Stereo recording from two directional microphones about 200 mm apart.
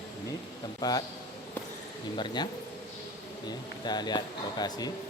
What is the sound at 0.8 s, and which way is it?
Speech, 20° left (ahead or behind).